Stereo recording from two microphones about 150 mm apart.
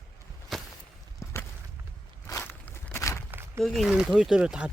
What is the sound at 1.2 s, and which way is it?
Walk, 20° left (ahead or behind).